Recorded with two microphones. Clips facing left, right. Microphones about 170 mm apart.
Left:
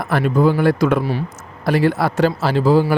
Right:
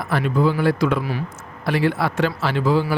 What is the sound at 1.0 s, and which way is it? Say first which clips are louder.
Speech: left 4 dB; 30° left (ahead or behind).